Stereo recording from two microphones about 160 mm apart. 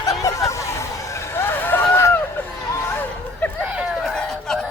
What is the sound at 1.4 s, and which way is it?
Vehicle, 15° left (ahead or behind).